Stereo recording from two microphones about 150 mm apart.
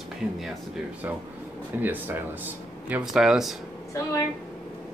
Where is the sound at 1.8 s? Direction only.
10° right (ahead or behind).